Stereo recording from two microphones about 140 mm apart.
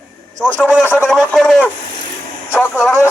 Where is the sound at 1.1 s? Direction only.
5° left (ahead or behind).